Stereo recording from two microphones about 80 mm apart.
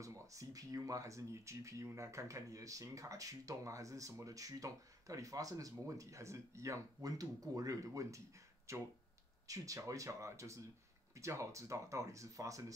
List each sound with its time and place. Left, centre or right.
0.0 s speech: right